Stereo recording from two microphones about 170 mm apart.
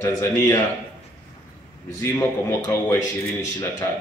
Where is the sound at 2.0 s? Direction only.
15° left (ahead or behind).